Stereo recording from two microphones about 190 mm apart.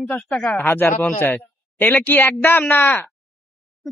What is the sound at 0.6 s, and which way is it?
A man's voice, 10° left (ahead or behind).